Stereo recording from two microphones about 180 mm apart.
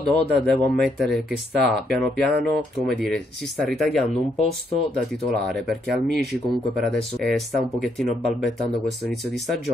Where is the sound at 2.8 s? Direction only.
5° left (ahead or behind).